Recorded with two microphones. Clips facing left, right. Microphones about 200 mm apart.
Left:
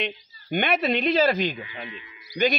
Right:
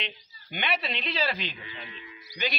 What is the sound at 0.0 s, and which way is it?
A man's voice, 50° left (ahead or behind).